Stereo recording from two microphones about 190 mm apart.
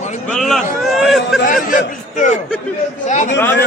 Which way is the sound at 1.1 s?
Centre (ahead or behind).